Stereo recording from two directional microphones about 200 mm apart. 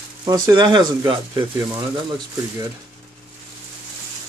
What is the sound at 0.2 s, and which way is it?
Speech, 20° right (ahead or behind).